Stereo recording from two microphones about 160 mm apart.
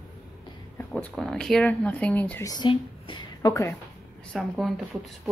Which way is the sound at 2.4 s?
25° left (ahead or behind).